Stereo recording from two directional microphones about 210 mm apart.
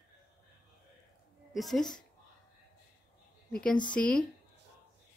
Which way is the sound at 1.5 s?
Centre (ahead or behind).